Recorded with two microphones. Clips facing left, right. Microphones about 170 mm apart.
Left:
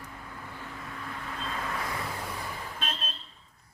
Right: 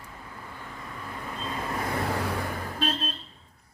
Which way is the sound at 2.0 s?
80° right.